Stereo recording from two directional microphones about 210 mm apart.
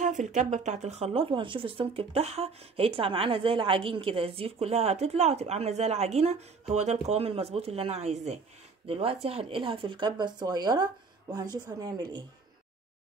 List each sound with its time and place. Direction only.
0.0 s speech: 35° right (ahead or behind); by 12.3 s 20° right (ahead or behind)